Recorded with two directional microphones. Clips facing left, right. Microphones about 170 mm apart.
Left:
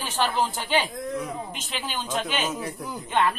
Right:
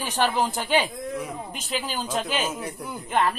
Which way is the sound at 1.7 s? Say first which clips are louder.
Right 3 dB; 35° right (ahead or behind).